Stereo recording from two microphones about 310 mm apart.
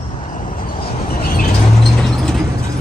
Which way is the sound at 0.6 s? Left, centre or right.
Left.